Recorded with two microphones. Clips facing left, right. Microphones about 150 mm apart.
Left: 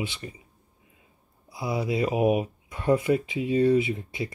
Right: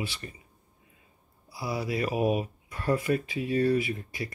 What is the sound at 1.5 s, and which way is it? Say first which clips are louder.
Speech: left 4 dB; 20° left (ahead or behind).